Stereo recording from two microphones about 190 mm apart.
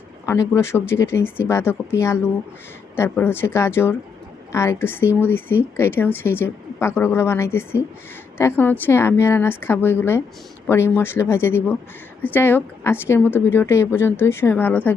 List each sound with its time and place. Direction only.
0.3 s a woman's voice: 15° left (ahead or behind)